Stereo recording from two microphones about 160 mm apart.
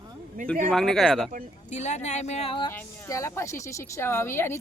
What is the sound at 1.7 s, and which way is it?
Speech, 45° left (ahead or behind).